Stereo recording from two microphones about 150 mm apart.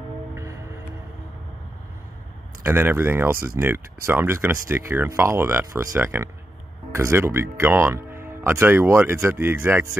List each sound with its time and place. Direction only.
2.6 s speech: 15° right (ahead or behind)